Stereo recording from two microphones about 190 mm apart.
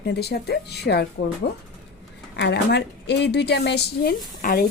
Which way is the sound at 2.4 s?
60° left (ahead or behind).